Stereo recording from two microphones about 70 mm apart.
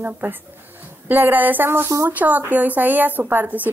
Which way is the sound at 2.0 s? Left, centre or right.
Right.